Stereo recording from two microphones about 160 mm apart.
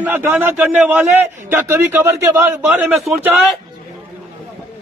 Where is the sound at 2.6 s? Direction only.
5° right (ahead or behind).